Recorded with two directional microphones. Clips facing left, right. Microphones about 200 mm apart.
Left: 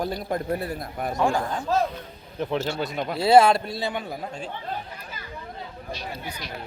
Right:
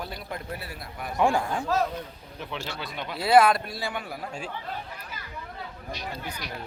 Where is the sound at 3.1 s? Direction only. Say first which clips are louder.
Left 3 dB; 25° left (ahead or behind).